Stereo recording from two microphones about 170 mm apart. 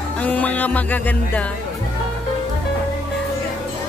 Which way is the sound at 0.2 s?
10° left (ahead or behind).